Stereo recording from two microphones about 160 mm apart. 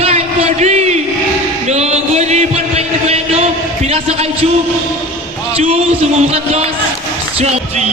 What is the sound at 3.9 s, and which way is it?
Speech, 40° right (ahead or behind).